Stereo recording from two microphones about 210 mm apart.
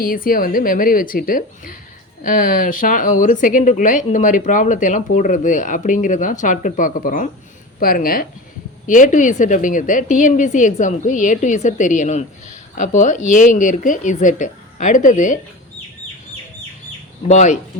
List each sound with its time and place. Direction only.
0.0 s a woman's voice: 45° left (ahead or behind)
17.2 s a woman's voice: 35° left (ahead or behind)